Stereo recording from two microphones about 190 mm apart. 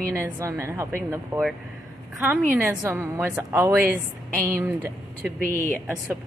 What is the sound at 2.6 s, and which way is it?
Speech, 10° right (ahead or behind).